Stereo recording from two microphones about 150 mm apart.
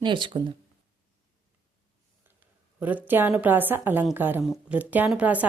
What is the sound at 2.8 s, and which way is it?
A woman's voice, 10° right (ahead or behind).